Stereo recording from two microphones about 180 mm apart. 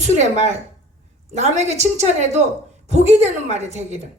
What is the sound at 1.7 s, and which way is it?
Speech, 40° right (ahead or behind).